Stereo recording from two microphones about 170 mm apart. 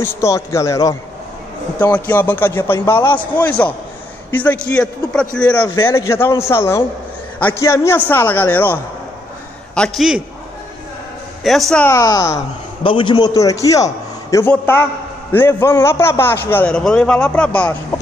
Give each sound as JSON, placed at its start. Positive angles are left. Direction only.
{"t": 0.0, "sound": "a man's voice", "side_deg": 15}
{"t": 5.6, "sound": "a man's voice", "side_deg": 20}
{"t": 9.8, "sound": "a man's voice", "side_deg": 0}
{"t": 11.4, "sound": "a man's voice", "side_deg": 0}
{"t": 11.8, "sound": "a man's voice", "side_deg": 20}